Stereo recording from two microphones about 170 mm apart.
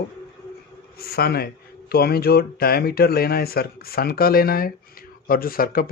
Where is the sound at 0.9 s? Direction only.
65° left (ahead or behind).